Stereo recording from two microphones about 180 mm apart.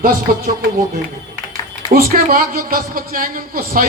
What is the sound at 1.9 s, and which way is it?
A man's voice, 55° right (ahead or behind).